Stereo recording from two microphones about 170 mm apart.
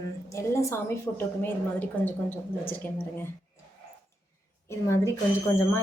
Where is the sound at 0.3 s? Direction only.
15° left (ahead or behind).